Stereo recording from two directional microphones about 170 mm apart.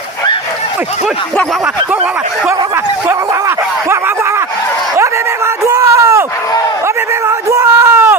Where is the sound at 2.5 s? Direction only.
15° right (ahead or behind).